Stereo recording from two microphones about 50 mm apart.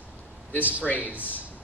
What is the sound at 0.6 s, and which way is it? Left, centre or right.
Speech, right.